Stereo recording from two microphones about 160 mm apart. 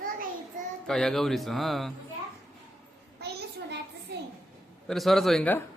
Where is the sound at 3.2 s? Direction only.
90° right.